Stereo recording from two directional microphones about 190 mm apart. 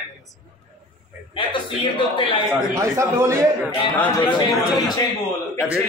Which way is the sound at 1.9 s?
30° left (ahead or behind).